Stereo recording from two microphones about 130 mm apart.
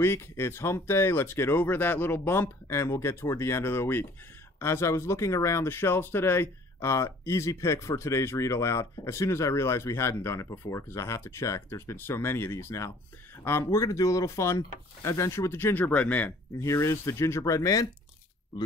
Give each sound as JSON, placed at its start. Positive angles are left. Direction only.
{"t": 0.0, "sound": "speech", "side_deg": 20}